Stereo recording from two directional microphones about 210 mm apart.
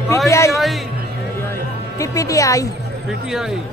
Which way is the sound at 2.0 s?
15° left (ahead or behind).